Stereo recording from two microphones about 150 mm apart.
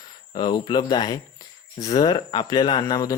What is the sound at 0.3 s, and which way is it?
Speech, 30° left (ahead or behind).